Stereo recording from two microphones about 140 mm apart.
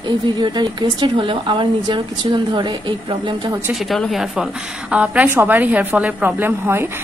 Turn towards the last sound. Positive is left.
turn(degrees=-15)  # may be behind; listen again after turning